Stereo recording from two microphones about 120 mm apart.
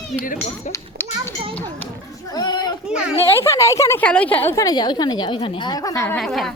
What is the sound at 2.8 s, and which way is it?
Speech, 5° right (ahead or behind).